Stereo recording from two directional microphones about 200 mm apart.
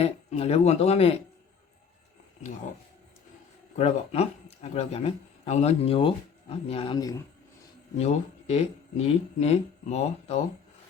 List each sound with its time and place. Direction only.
0.0 s speech: 30° left (ahead or behind)
3.8 s speech: 35° left (ahead or behind)
7.9 s speech: 35° left (ahead or behind)